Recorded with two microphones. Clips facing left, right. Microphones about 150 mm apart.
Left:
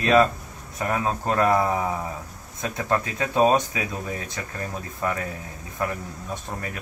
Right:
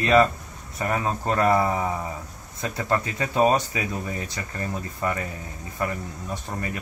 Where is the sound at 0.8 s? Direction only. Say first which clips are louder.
Even; centre (ahead or behind).